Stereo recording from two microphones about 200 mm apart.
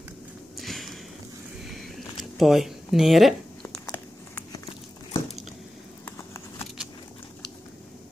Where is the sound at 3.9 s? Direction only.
20° left (ahead or behind).